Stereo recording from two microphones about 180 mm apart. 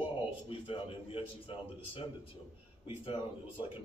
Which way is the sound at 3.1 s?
30° left (ahead or behind).